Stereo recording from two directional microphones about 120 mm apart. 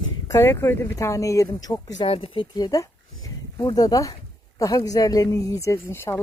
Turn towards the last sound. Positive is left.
turn(degrees=20)  # may be behind; listen again after turning